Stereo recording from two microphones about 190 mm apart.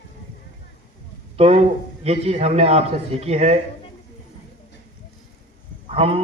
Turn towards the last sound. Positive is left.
turn(degrees=-30)  # may be behind; listen again after turning